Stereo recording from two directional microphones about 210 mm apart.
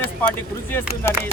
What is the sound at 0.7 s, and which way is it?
Speech, 10° left (ahead or behind).